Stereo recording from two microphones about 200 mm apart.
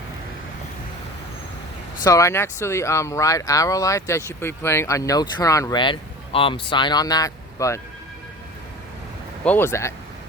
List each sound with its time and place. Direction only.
2.0 s speech: 15° left (ahead or behind)
9.4 s speech: 10° left (ahead or behind)